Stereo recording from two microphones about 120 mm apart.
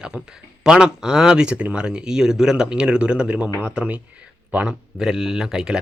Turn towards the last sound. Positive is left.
turn(degrees=-5)  # may be behind; listen again after turning